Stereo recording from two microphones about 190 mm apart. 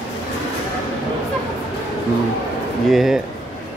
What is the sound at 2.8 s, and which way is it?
Speech, centre (ahead or behind).